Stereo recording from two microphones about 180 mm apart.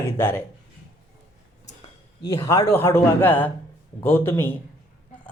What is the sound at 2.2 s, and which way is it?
Speech, 15° left (ahead or behind).